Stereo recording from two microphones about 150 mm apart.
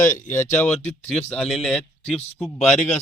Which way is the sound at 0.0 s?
55° left (ahead or behind).